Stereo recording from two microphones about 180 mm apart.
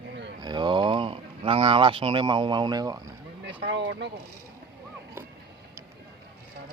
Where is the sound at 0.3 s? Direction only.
25° right (ahead or behind).